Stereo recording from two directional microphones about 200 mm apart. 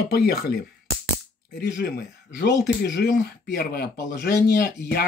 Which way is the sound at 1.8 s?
55° left (ahead or behind).